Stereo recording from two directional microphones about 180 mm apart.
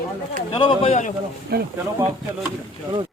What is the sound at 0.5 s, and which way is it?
Speech, 30° left (ahead or behind).